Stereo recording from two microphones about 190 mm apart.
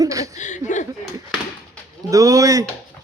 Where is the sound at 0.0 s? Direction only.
20° right (ahead or behind).